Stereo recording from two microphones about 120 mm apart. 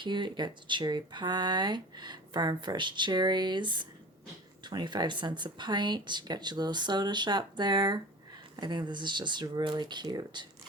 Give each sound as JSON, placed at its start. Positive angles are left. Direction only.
{"t": 0.0, "sound": "speech", "side_deg": -40}